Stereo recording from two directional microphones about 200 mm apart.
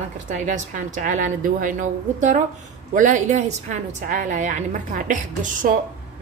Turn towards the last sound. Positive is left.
turn(degrees=-40)  # may be behind; listen again after turning